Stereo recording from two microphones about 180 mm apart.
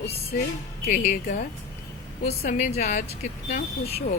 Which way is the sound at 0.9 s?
50° left (ahead or behind).